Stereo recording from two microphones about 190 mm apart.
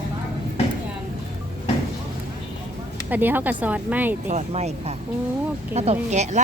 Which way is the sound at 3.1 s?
10° right (ahead or behind).